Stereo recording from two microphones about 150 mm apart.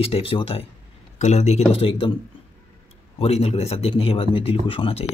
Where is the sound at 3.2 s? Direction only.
40° left (ahead or behind).